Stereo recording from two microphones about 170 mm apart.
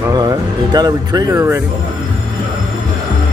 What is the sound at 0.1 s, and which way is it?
Speech, 20° right (ahead or behind).